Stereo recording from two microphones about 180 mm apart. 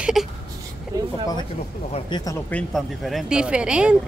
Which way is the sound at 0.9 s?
20° right (ahead or behind).